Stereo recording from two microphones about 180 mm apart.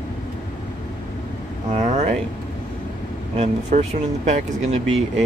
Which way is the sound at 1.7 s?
40° right (ahead or behind).